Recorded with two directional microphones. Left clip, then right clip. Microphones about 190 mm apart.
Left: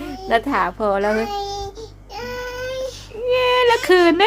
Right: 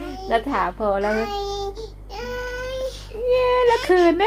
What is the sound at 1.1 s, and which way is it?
Child singing, 10° left (ahead or behind).